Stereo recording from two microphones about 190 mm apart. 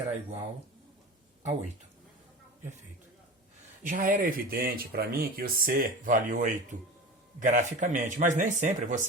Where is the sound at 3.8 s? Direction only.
45° right (ahead or behind).